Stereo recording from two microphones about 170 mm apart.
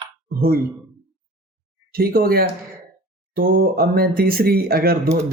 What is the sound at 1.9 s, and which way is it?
Speech, 60° right (ahead or behind).